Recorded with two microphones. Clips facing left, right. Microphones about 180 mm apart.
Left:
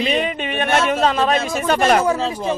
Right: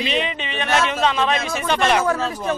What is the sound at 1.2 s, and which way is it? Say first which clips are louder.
Speech: left 3 dB; 40° left (ahead or behind).